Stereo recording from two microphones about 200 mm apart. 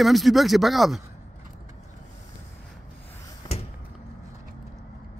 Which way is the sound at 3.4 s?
25° left (ahead or behind).